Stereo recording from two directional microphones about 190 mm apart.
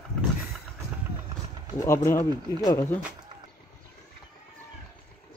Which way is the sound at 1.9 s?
15° left (ahead or behind).